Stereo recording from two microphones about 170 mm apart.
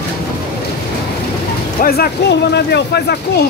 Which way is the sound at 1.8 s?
70° left (ahead or behind).